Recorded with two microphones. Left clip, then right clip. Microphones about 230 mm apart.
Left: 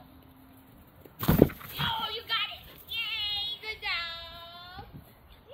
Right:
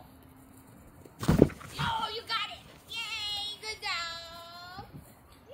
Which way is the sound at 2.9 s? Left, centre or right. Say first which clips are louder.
Left 3 dB; right.